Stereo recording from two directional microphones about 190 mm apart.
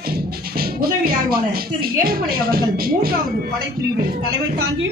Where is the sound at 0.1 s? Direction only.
50° right (ahead or behind).